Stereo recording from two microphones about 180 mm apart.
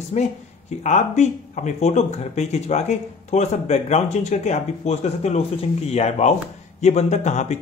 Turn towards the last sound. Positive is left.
turn(degrees=40)  # may be behind; listen again after turning